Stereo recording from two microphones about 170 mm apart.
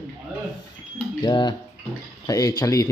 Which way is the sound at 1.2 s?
25° left (ahead or behind).